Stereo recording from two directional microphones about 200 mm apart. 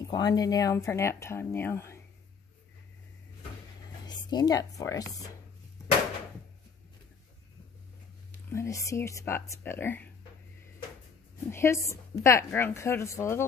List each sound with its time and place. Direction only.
0.0 s speech: 20° left (ahead or behind)
4.0 s speech: 20° left (ahead or behind)
8.5 s speech: 15° left (ahead or behind)
11.5 s speech: 15° left (ahead or behind)